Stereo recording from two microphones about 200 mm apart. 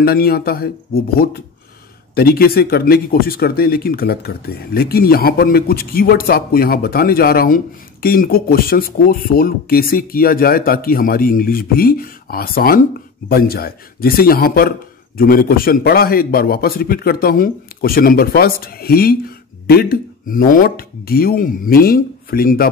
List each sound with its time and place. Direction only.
0.0 s speech: 50° left (ahead or behind)